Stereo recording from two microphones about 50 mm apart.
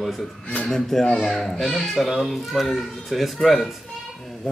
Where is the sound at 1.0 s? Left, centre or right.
Centre.